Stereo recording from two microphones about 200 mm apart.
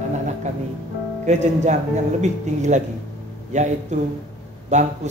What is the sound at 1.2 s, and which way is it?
Speech, 35° right (ahead or behind).